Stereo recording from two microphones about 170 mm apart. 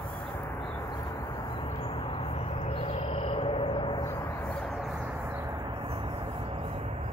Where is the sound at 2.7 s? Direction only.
35° left (ahead or behind).